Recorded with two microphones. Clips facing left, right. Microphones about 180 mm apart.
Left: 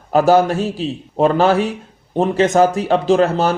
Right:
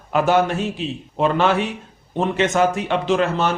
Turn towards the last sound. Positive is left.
turn(degrees=35)  # may be behind; listen again after turning